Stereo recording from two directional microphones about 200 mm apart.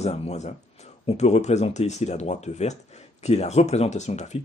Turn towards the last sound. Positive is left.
turn(degrees=35)  # may be behind; listen again after turning